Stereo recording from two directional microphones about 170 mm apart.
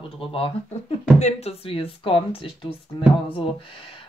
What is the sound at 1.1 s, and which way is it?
Speech, 40° left (ahead or behind).